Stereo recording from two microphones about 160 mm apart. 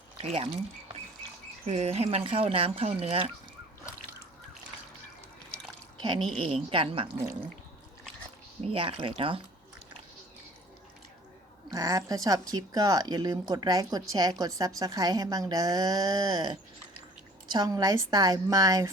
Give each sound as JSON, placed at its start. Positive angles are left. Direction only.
{"t": 0.2, "sound": "speech", "side_deg": -40}
{"t": 1.6, "sound": "speech", "side_deg": -40}
{"t": 6.3, "sound": "speech", "side_deg": -35}
{"t": 8.6, "sound": "speech", "side_deg": -35}
{"t": 11.7, "sound": "a woman's voice", "side_deg": -20}